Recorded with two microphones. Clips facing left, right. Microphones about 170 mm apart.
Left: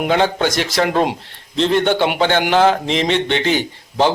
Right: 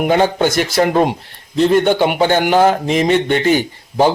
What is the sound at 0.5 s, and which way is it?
Speech, 55° right (ahead or behind).